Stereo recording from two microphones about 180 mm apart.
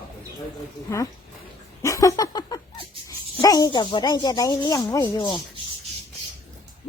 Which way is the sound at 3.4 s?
20° left (ahead or behind).